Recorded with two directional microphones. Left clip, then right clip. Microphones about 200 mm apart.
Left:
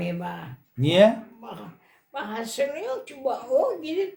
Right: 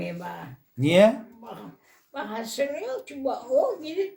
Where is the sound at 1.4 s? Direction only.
5° left (ahead or behind).